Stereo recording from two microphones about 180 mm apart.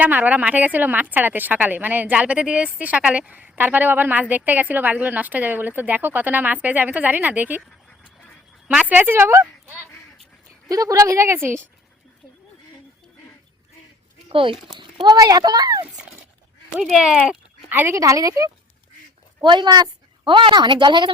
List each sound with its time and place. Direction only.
0.0 s a woman's voice: 10° right (ahead or behind)
8.0 s a sound: 5° right (ahead or behind)
10.7 s a woman's voice: 20° right (ahead or behind)
14.3 s a child's voice: 25° right (ahead or behind)
16.7 s a woman's voice: centre (ahead or behind); by 21.1 s 25° right (ahead or behind)